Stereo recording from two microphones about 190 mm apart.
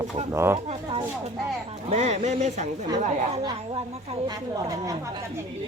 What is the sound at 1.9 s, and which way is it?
Speech, 35° right (ahead or behind).